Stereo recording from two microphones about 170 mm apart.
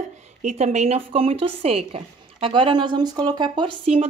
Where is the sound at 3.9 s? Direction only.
40° right (ahead or behind).